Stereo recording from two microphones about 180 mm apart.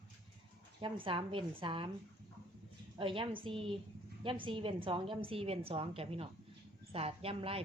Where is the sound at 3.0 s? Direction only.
30° right (ahead or behind).